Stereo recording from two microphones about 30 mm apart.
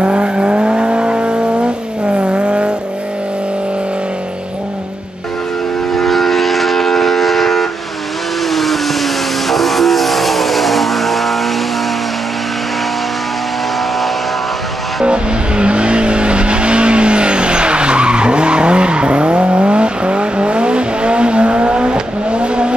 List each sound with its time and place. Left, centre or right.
0.0 s vehicle: right
5.9 s vehicle: centre
15.0 s vehicle: right